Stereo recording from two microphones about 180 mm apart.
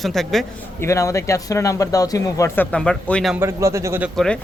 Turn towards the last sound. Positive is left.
turn(degrees=-15)  # may be behind; listen again after turning